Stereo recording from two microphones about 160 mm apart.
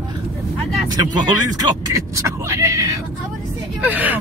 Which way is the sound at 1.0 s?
25° right (ahead or behind).